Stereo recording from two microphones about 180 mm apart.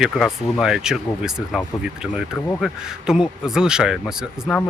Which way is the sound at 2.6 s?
5° right (ahead or behind).